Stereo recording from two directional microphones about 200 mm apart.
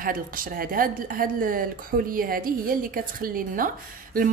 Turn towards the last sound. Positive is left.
turn(degrees=-45)  # may be behind; listen again after turning